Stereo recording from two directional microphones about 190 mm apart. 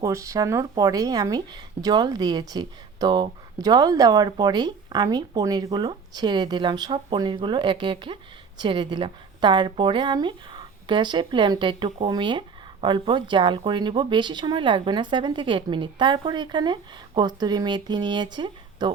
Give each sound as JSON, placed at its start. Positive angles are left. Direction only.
{"t": 0.0, "sound": "speech", "side_deg": -15}